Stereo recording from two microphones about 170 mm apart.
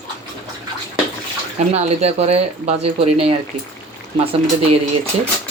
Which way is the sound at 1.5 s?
40° right (ahead or behind).